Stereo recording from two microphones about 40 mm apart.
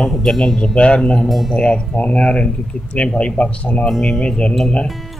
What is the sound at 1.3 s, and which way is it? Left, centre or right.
Speech, centre.